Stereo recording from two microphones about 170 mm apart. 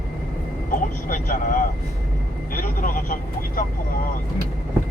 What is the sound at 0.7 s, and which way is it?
Speech, 50° left (ahead or behind).